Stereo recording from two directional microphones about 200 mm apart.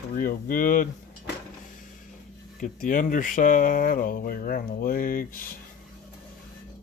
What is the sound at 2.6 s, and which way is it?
Speech, 40° left (ahead or behind).